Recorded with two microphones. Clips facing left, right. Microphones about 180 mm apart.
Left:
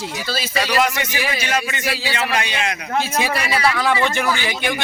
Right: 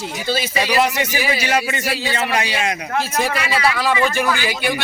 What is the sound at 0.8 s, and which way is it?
A man's voice, 35° right (ahead or behind).